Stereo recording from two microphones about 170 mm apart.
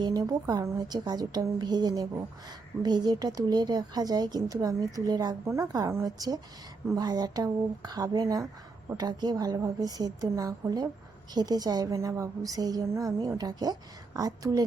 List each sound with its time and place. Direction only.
0.0 s a woman's voice: 25° right (ahead or behind)